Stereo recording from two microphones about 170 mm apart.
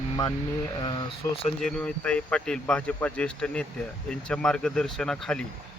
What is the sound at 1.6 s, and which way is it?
Speech, 5° left (ahead or behind).